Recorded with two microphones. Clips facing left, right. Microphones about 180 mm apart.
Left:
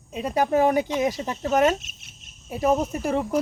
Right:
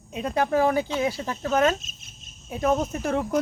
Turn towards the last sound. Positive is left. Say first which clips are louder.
# left 1 dB
turn(degrees=10)  # may be behind; listen again after turning